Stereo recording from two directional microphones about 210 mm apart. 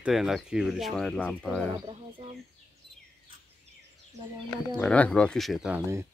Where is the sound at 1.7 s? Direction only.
25° right (ahead or behind).